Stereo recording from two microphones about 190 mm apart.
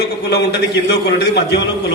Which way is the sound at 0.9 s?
60° left (ahead or behind).